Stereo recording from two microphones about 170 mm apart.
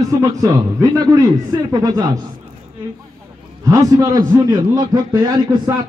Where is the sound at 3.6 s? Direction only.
20° right (ahead or behind).